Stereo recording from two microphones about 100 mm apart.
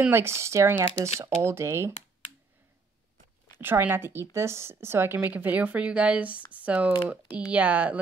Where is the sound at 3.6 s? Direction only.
20° right (ahead or behind).